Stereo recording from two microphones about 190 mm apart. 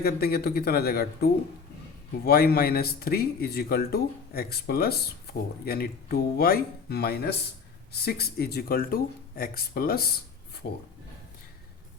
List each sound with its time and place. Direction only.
0.0 s speech: 55° left (ahead or behind)